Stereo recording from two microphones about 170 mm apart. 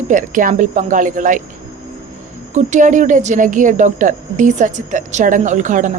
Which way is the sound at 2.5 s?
45° right (ahead or behind).